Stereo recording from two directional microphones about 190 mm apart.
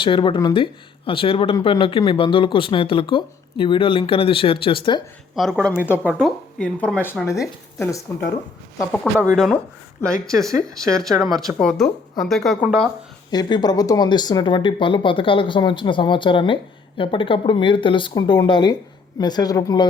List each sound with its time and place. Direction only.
0.0 s speech: 25° left (ahead or behind)
5.3 s speech: centre (ahead or behind)
13.3 s speech: 20° left (ahead or behind)